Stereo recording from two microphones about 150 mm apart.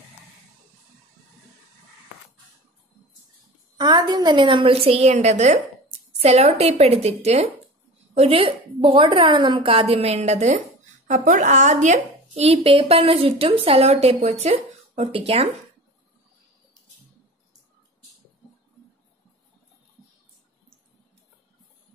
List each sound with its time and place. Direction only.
3.7 s a woman's voice: 25° right (ahead or behind); by 15.5 s 40° right (ahead or behind)